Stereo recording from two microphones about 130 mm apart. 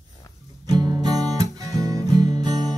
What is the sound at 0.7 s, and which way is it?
Music, 30° right (ahead or behind).